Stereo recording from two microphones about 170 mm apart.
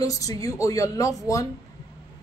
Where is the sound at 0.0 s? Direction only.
20° left (ahead or behind).